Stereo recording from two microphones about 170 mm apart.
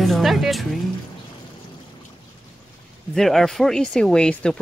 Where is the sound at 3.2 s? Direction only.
Centre (ahead or behind).